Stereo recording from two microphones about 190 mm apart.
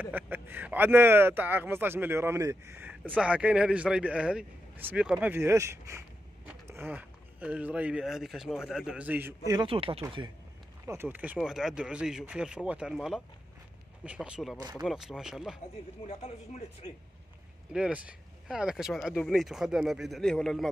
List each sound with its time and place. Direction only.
0.0 s speech: 10° right (ahead or behind)
9.5 s speech: 25° right (ahead or behind)
10.9 s speech: 10° right (ahead or behind)
16.1 s speech: 35° left (ahead or behind)
17.7 s speech: 5° right (ahead or behind)